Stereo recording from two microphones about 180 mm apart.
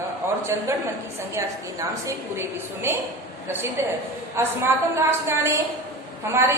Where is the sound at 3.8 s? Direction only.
15° right (ahead or behind).